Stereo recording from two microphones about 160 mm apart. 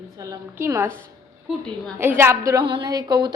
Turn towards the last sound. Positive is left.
turn(degrees=-25)  # may be behind; listen again after turning